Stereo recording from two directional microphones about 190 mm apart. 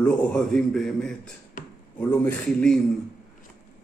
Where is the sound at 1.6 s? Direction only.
45° left (ahead or behind).